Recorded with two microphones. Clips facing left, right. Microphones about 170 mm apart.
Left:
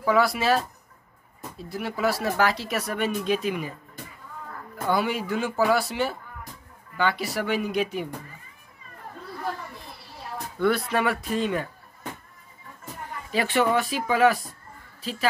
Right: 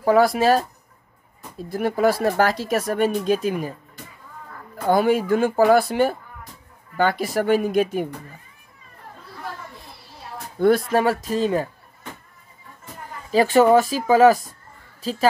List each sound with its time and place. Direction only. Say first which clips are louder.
0.0 s speech: right 6 dB; 45° right (ahead or behind)
4.8 s speech: right 7 dB; 45° right (ahead or behind)
10.6 s speech: right 6 dB; 45° right (ahead or behind)
13.3 s speech: right 8 dB; 40° right (ahead or behind)